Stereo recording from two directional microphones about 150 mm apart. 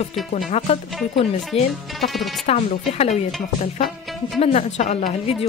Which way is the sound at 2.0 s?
Centre (ahead or behind).